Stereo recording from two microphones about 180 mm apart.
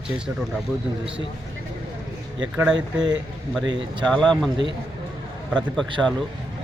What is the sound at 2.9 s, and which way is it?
Speech, 25° right (ahead or behind).